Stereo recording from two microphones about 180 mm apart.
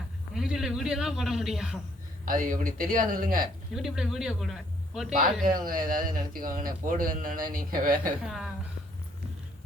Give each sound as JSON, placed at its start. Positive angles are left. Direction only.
{"t": 0.3, "sound": "speech", "side_deg": -5}
{"t": 2.2, "sound": "speech", "side_deg": -50}
{"t": 3.8, "sound": "a man's voice", "side_deg": -5}
{"t": 5.1, "sound": "speech", "side_deg": -50}
{"t": 8.2, "sound": "a man's voice", "side_deg": 0}